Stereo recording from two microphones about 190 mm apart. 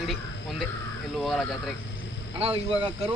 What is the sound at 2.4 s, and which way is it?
Speech, 30° right (ahead or behind).